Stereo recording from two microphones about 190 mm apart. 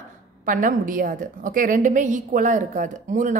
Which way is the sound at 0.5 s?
45° right (ahead or behind).